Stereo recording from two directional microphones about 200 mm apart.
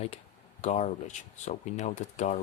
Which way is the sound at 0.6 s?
35° left (ahead or behind).